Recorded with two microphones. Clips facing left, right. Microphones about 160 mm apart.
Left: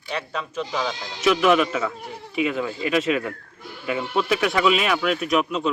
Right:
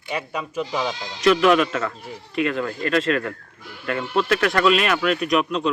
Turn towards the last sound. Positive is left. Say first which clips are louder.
# right 1 dB
turn(degrees=5)  # may be behind; listen again after turning